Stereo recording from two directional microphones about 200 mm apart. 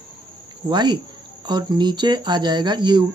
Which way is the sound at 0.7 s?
20° right (ahead or behind).